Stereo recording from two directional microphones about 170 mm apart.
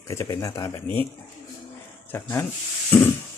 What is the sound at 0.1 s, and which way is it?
Speech, 15° left (ahead or behind).